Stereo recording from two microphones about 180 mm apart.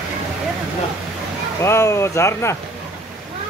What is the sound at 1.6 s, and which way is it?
Speech, 15° left (ahead or behind).